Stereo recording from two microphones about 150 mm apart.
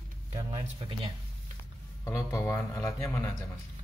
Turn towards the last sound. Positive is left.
turn(degrees=20)  # may be behind; listen again after turning